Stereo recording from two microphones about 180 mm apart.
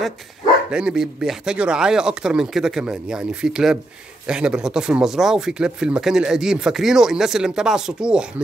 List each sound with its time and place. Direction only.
0.7 s speech: 5° right (ahead or behind)